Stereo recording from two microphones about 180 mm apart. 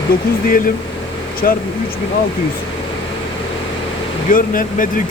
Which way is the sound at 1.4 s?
50° left (ahead or behind).